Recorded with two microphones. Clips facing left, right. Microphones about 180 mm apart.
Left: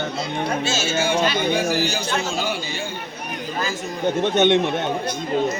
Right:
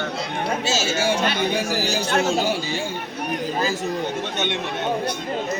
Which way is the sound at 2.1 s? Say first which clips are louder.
Right 4 dB; 65° right (ahead or behind).